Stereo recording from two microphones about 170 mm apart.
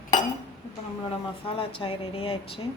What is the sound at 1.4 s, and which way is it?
Speech, 30° left (ahead or behind).